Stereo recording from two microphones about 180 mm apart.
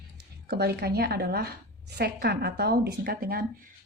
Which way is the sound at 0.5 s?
60° right (ahead or behind).